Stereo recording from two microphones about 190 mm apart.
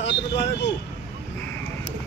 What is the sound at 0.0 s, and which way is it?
Vehicle, 70° left (ahead or behind).